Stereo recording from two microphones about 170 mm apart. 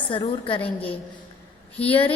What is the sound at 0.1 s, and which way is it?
A woman's voice, 30° left (ahead or behind).